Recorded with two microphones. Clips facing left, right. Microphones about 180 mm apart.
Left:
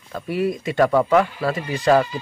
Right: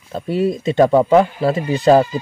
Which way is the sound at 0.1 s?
25° right (ahead or behind).